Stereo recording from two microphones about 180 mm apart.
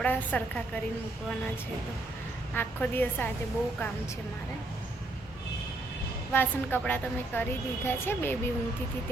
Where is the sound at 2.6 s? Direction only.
10° left (ahead or behind).